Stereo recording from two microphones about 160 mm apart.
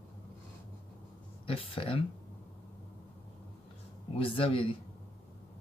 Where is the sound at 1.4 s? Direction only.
35° left (ahead or behind).